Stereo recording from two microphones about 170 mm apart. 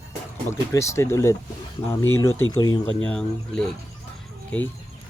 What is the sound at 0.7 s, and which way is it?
Speech, 15° left (ahead or behind).